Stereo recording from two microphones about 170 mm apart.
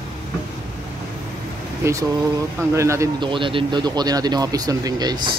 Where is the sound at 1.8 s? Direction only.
15° right (ahead or behind).